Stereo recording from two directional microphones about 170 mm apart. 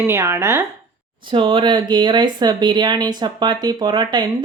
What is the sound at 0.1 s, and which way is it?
Speech, 15° right (ahead or behind).